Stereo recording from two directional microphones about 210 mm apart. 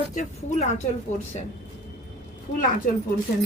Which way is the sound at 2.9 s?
40° left (ahead or behind).